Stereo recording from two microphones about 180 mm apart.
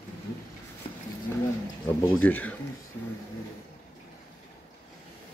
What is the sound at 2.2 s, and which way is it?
Speech, 10° left (ahead or behind).